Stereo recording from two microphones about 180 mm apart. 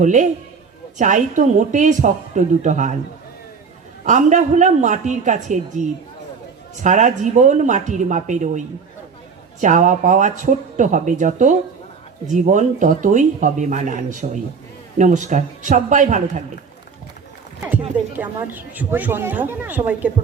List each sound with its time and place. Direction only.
0.0 s speech: 40° right (ahead or behind)
4.0 s speech: 45° right (ahead or behind)
17.6 s speech: 10° right (ahead or behind)